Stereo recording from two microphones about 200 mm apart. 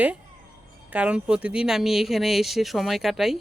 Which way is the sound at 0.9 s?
5° right (ahead or behind).